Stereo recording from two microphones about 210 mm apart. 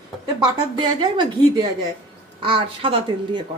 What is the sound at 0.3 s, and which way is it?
A woman's voice, 20° right (ahead or behind).